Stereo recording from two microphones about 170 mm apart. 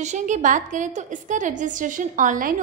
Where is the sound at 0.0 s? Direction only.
45° right (ahead or behind).